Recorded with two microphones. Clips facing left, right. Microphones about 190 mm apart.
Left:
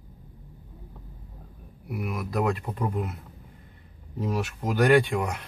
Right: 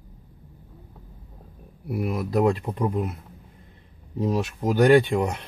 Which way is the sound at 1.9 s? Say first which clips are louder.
Right 5 dB; 30° right (ahead or behind).